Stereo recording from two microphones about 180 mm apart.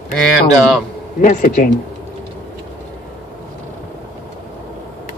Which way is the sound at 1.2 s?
45° left (ahead or behind).